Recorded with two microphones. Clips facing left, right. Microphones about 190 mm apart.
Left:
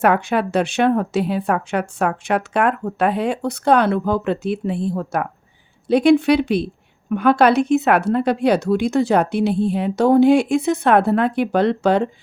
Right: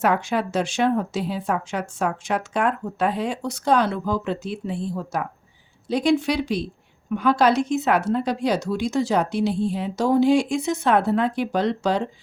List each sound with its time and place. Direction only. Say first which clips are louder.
0.0 s speech: left 4 dB; 60° left (ahead or behind)